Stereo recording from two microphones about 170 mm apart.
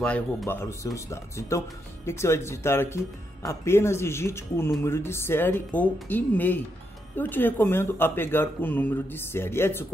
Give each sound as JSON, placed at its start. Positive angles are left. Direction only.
{"t": 0.0, "sound": "speech", "side_deg": 5}